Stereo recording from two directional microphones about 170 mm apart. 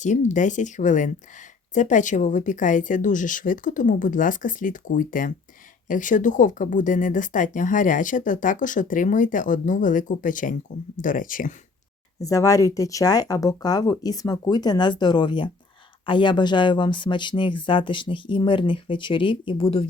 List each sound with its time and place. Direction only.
0.0 s speech: 45° left (ahead or behind)
12.2 s speech: 20° left (ahead or behind)